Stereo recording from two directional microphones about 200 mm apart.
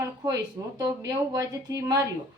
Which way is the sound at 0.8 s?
15° right (ahead or behind).